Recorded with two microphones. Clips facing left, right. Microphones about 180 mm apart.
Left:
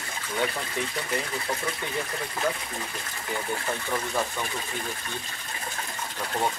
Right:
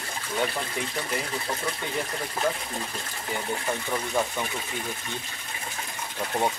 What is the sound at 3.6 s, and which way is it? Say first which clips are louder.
Speech: right 1 dB; 15° right (ahead or behind).